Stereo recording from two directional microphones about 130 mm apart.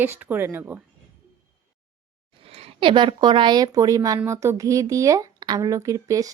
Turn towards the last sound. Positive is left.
turn(degrees=-25)  # may be behind; listen again after turning